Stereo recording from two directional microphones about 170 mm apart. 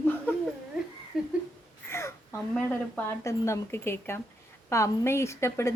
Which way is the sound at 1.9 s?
15° left (ahead or behind).